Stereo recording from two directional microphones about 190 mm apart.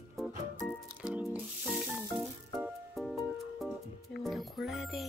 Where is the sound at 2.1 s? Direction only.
Centre (ahead or behind).